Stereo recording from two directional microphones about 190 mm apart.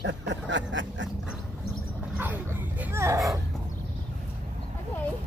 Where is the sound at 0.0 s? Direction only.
70° right (ahead or behind).